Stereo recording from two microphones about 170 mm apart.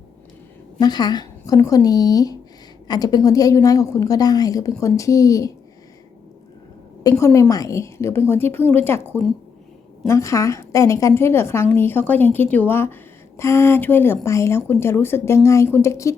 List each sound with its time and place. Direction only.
0.8 s a woman's voice: 25° left (ahead or behind)
7.0 s a woman's voice: 20° left (ahead or behind)